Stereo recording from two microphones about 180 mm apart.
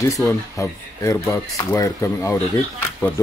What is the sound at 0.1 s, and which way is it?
Speech, 15° left (ahead or behind).